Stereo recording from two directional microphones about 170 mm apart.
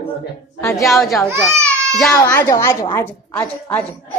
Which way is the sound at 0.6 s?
20° left (ahead or behind).